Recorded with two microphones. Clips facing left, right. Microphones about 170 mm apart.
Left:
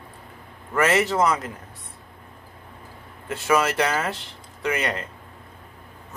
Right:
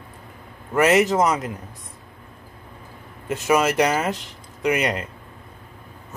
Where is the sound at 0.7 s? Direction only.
15° right (ahead or behind).